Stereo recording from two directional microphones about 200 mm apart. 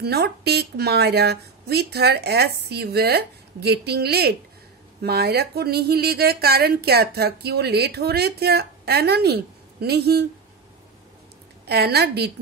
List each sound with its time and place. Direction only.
0.0 s speech: 55° right (ahead or behind)
11.6 s speech: 55° right (ahead or behind)